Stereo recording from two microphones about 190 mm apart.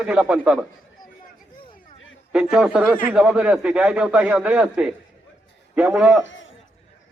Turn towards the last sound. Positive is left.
turn(degrees=80)